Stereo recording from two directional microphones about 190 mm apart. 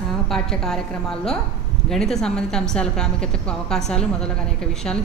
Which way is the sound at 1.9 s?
Centre (ahead or behind).